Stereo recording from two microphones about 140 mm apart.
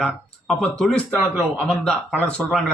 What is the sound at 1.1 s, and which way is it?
Speech, 15° right (ahead or behind).